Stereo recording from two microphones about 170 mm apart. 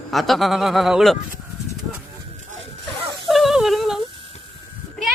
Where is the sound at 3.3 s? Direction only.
Centre (ahead or behind).